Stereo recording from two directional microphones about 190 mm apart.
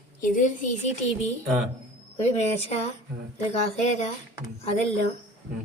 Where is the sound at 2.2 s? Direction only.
35° left (ahead or behind).